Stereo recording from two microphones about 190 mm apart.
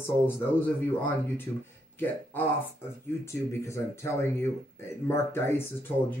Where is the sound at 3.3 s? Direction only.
15° left (ahead or behind).